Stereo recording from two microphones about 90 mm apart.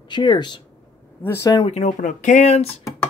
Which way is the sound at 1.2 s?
25° left (ahead or behind).